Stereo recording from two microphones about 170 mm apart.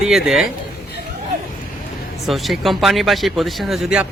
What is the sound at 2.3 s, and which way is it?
Speech, centre (ahead or behind).